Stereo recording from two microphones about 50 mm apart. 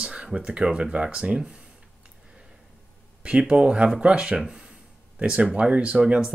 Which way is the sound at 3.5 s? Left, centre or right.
Centre.